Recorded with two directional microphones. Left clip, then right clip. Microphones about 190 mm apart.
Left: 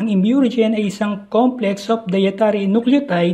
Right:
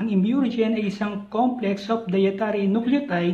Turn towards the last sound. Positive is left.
turn(degrees=35)  # may be behind; listen again after turning